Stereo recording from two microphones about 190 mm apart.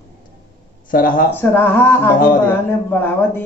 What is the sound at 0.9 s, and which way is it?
Speech, 50° left (ahead or behind).